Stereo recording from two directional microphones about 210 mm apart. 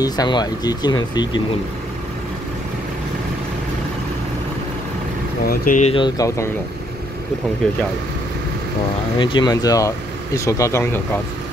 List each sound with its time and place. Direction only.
0.0 s speech: 20° left (ahead or behind)
5.5 s speech: 35° left (ahead or behind); by 6.5 s 15° left (ahead or behind)
9.2 s speech: 20° left (ahead or behind)